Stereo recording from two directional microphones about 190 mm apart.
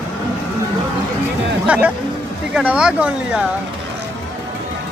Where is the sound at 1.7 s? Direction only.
5° right (ahead or behind).